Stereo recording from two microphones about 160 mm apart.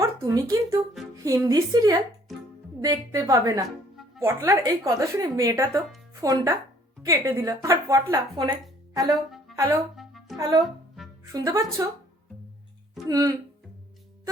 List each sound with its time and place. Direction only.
0.0 s a sound: 20° right (ahead or behind)
1.1 s a woman's voice: 20° right (ahead or behind)
9.6 s speech: 15° right (ahead or behind)
10.0 s music: centre (ahead or behind)
11.3 s a woman's voice: 20° right (ahead or behind)
13.1 s a woman's voice: 20° right (ahead or behind)